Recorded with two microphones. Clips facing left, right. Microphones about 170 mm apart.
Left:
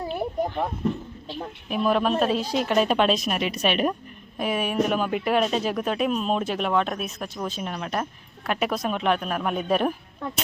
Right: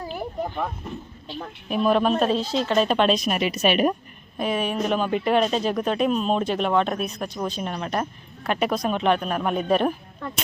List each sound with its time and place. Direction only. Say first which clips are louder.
0.0 s a sound: left 3 dB; 25° left (ahead or behind)
1.7 s speech: right 2 dB; centre (ahead or behind)
4.4 s speech: even; 10° left (ahead or behind)